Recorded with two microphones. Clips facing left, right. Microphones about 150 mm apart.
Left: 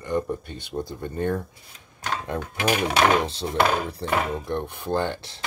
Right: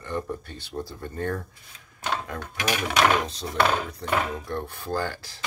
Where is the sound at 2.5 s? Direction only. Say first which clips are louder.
Left 3 dB; 30° left (ahead or behind).